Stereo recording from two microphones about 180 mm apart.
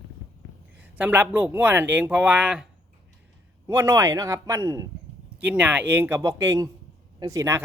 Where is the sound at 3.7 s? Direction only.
15° right (ahead or behind).